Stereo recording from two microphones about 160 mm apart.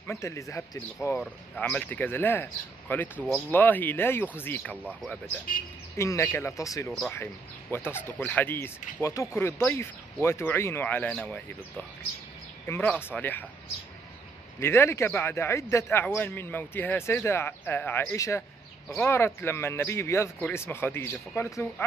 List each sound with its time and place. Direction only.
0.0 s a man's voice: 15° left (ahead or behind)
5.9 s a man's voice: 15° left (ahead or behind)
14.6 s a man's voice: 15° left (ahead or behind)